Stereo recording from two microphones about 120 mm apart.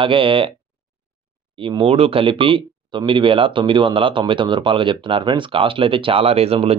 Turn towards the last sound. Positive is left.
turn(degrees=-55)  # may be behind; listen again after turning